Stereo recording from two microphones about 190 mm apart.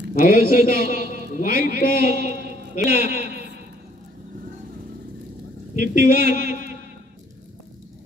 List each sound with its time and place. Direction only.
0.2 s a man's voice: 50° left (ahead or behind)
2.1 s a sound: 60° right (ahead or behind)
2.7 s a man's voice: 45° left (ahead or behind)
5.8 s a man's voice: 45° left (ahead or behind)
6.4 s a man's voice: 60° right (ahead or behind)